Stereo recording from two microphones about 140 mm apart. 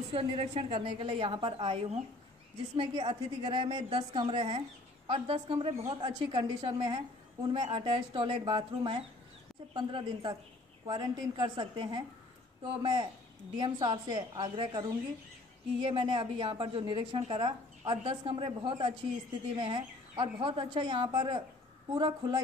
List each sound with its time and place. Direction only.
0.1 s a woman's voice: 40° right (ahead or behind)